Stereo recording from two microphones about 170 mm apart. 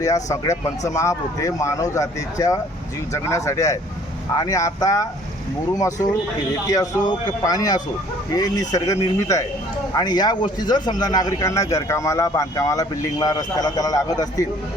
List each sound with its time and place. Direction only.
0.0 s speech: 20° left (ahead or behind)
6.7 s speech: 20° left (ahead or behind)